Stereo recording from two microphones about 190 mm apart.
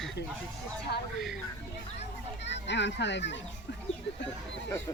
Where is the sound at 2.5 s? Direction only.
70° left (ahead or behind).